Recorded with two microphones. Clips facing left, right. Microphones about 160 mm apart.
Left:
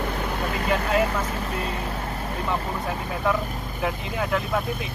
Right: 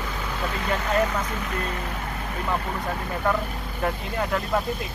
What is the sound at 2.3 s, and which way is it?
Speech, centre (ahead or behind).